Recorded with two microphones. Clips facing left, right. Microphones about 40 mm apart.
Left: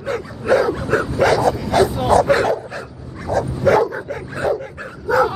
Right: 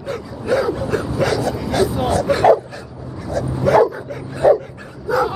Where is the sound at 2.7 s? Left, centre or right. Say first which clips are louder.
Left 1 dB; left.